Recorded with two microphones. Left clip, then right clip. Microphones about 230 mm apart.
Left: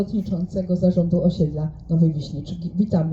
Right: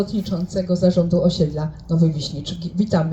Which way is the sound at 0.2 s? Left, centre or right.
Right.